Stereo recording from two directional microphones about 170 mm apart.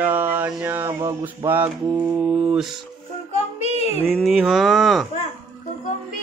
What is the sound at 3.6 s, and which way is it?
Child singing, 40° left (ahead or behind).